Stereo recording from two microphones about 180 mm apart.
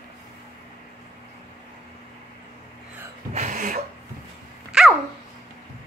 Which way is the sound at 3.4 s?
45° right (ahead or behind).